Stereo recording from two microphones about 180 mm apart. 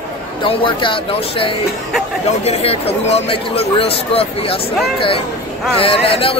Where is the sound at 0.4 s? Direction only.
25° left (ahead or behind).